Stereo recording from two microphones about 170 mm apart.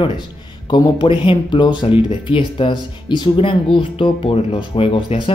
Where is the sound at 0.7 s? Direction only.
25° left (ahead or behind).